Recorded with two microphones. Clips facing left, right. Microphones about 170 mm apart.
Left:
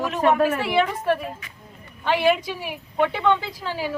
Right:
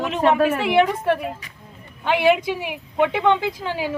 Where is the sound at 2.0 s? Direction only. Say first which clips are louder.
Right 2 dB; 15° right (ahead or behind).